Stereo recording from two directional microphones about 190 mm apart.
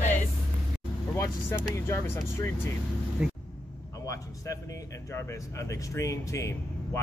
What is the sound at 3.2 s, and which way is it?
Vehicle, 5° right (ahead or behind).